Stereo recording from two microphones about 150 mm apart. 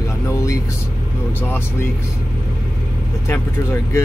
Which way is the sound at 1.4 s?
15° left (ahead or behind).